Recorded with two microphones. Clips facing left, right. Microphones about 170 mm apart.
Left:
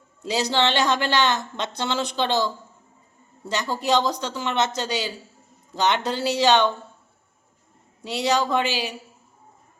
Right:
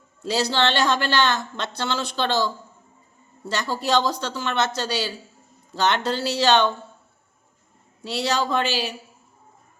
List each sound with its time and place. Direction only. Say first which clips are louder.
0.2 s a woman's voice: even; 15° left (ahead or behind)
3.5 s a woman's voice: even; 20° left (ahead or behind)
8.0 s a woman's voice: left 2 dB; 15° left (ahead or behind)